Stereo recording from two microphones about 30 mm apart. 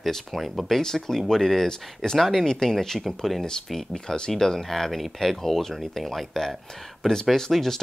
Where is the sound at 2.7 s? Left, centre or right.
Centre.